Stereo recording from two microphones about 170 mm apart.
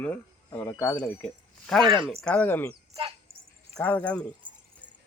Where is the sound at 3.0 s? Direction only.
35° right (ahead or behind).